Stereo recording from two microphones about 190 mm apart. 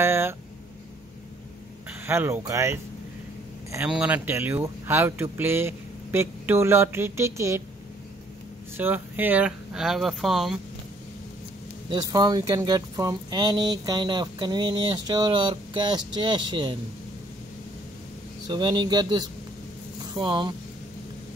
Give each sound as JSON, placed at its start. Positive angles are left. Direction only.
{"t": 0.0, "sound": "speech", "side_deg": -15}
{"t": 2.0, "sound": "speech", "side_deg": -15}
{"t": 8.7, "sound": "speech", "side_deg": -10}
{"t": 11.9, "sound": "speech", "side_deg": -20}
{"t": 18.5, "sound": "speech", "side_deg": -25}